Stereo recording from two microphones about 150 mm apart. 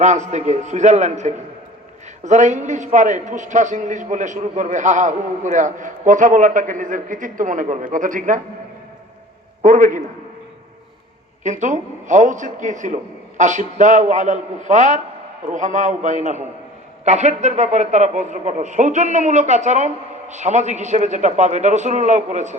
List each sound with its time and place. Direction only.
0.0 s a man's voice: 50° right (ahead or behind)
9.6 s a man's voice: 60° right (ahead or behind)
11.4 s a man's voice: 55° right (ahead or behind)